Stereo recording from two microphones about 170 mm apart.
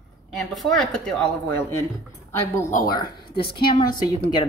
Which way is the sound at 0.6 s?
Centre (ahead or behind).